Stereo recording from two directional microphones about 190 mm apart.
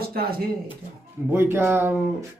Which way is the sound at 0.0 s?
55° right (ahead or behind).